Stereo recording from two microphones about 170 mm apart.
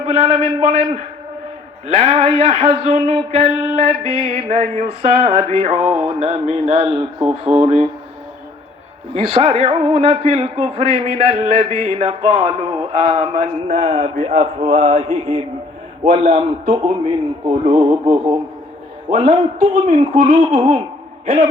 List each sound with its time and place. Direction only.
0.0 s speech: 35° right (ahead or behind)
9.1 s speech: 35° right (ahead or behind)